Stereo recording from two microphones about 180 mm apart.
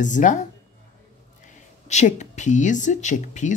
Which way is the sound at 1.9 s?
40° left (ahead or behind).